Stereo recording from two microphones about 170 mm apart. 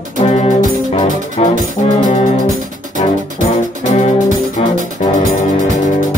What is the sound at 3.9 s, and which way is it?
Music, 45° left (ahead or behind).